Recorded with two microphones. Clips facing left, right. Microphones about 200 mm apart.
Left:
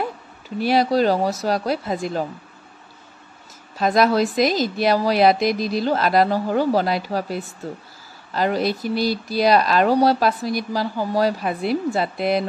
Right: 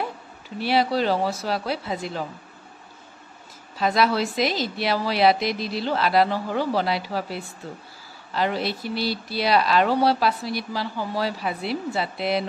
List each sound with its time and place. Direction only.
0.6 s speech: 45° left (ahead or behind)
3.7 s speech: 45° left (ahead or behind)